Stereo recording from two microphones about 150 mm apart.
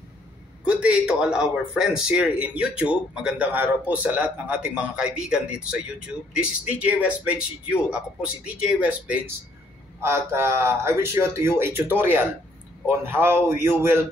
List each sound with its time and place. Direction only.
0.7 s a man's voice: 5° right (ahead or behind)